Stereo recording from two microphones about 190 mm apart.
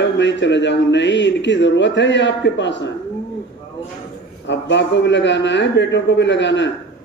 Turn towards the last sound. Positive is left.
turn(degrees=70)  # may be behind; listen again after turning